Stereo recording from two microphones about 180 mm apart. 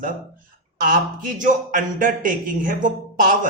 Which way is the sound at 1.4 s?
45° right (ahead or behind).